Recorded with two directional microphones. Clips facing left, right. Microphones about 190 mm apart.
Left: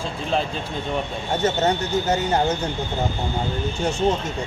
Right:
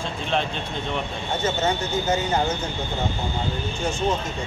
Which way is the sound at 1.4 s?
40° left (ahead or behind).